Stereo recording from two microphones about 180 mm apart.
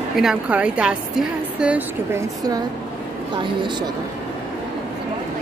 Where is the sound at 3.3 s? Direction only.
25° right (ahead or behind).